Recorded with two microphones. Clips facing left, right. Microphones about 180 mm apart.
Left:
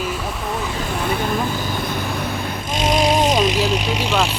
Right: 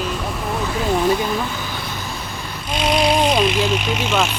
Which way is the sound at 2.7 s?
45° left (ahead or behind).